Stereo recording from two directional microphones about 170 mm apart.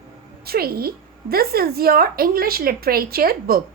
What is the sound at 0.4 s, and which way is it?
A woman's voice, 65° right (ahead or behind).